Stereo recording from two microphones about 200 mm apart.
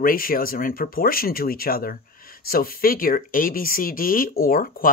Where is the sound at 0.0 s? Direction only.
45° left (ahead or behind).